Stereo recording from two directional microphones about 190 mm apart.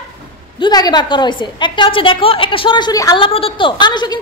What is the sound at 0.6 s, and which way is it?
A woman's voice, 20° left (ahead or behind).